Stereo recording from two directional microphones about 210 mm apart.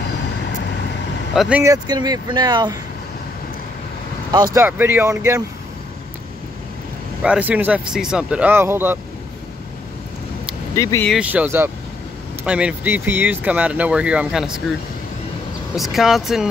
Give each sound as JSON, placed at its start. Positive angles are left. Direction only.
{"t": 1.3, "sound": "speech", "side_deg": 0}
{"t": 1.6, "sound": "speech", "side_deg": -15}
{"t": 4.6, "sound": "speech", "side_deg": -10}
{"t": 7.2, "sound": "speech", "side_deg": -5}
{"t": 10.7, "sound": "speech", "side_deg": 15}
{"t": 11.1, "sound": "speech", "side_deg": -5}
{"t": 15.7, "sound": "speech", "side_deg": 0}